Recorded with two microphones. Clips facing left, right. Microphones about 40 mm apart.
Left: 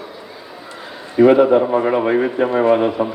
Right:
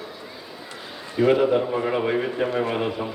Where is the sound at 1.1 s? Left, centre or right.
Left.